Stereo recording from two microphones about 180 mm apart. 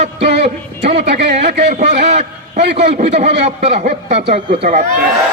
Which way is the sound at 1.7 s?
40° right (ahead or behind).